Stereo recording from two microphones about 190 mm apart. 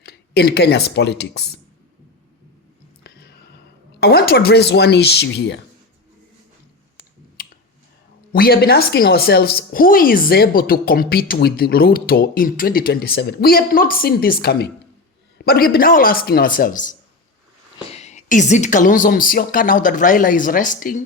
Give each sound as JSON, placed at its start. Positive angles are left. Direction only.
{"t": 0.0, "sound": "speech", "side_deg": 55}
{"t": 3.0, "sound": "a sound", "side_deg": 60}
{"t": 4.0, "sound": "speech", "side_deg": 55}
{"t": 7.4, "sound": "a sound", "side_deg": 50}
{"t": 8.3, "sound": "a woman's voice", "side_deg": 50}
{"t": 17.9, "sound": "a woman's voice", "side_deg": 35}